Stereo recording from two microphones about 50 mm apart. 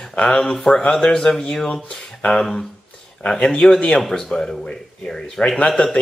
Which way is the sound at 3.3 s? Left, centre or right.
Centre.